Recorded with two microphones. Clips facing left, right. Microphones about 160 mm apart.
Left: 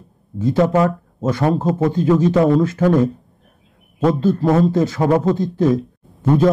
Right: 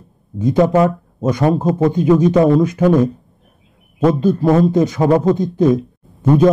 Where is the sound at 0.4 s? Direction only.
20° right (ahead or behind).